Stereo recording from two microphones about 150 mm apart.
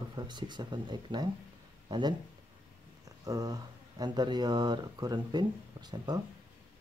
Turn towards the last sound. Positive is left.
turn(degrees=-30)  # may be behind; listen again after turning